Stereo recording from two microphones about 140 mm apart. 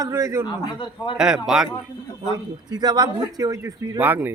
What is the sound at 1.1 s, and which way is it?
Speech, 5° right (ahead or behind).